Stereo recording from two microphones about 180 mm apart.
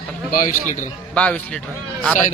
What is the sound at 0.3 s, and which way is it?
Speech, 45° left (ahead or behind).